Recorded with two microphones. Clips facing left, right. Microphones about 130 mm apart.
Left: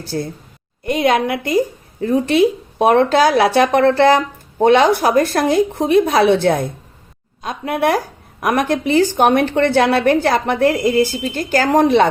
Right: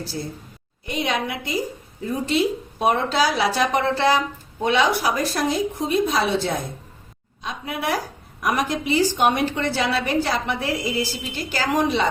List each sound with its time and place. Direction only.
0.0 s a woman's voice: 55° left (ahead or behind)